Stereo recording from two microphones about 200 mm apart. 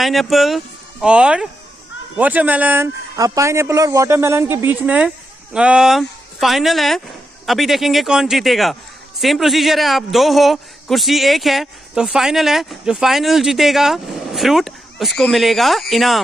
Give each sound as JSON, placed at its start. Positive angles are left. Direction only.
{"t": 0.0, "sound": "a man's voice", "side_deg": 0}